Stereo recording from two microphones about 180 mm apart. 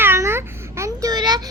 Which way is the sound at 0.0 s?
15° right (ahead or behind).